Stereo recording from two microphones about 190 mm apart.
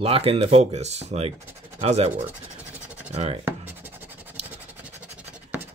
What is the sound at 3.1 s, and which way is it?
Speech, 35° right (ahead or behind).